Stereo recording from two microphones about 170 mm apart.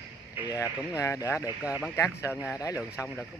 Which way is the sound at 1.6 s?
5° right (ahead or behind).